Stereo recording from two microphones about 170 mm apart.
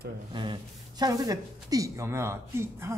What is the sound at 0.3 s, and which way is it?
Speech, 25° right (ahead or behind).